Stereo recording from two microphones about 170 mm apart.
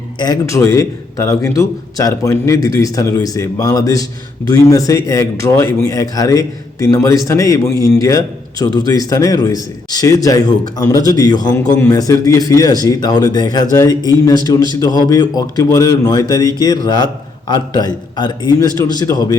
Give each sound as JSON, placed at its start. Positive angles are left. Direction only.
{"t": 0.2, "sound": "a man's voice", "side_deg": 20}